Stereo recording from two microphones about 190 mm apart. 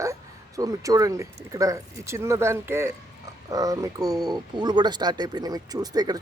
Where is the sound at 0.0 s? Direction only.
15° right (ahead or behind).